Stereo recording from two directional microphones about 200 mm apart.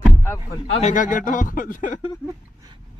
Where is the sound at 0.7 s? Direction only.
35° left (ahead or behind).